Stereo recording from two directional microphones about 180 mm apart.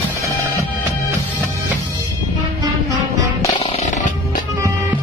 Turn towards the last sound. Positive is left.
turn(degrees=40)  # may be behind; listen again after turning